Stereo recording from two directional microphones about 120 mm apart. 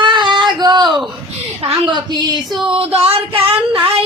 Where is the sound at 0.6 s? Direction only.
35° right (ahead or behind).